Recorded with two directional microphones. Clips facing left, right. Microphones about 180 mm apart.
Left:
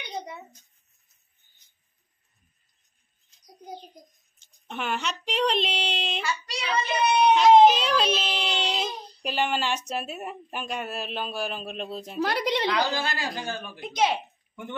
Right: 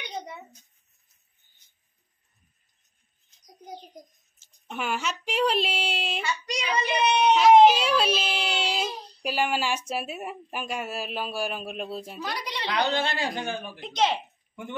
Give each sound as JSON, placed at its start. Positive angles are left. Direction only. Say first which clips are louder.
{"t": 4.4, "sound": "speech", "louder": "even", "side_deg": -5}
{"t": 12.2, "sound": "a woman's voice", "louder": "left 8 dB", "side_deg": 60}
{"t": 12.7, "sound": "a man's voice", "louder": "right 1 dB", "side_deg": -25}
{"t": 13.7, "sound": "speech", "louder": "left 1 dB", "side_deg": 10}